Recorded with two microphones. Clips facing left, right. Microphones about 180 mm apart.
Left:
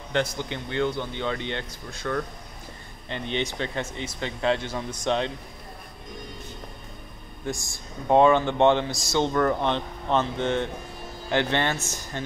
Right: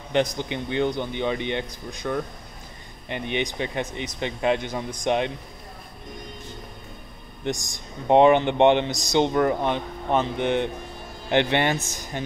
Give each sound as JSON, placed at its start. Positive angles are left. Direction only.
{"t": 0.1, "sound": "speech", "side_deg": -15}
{"t": 7.4, "sound": "speech", "side_deg": -20}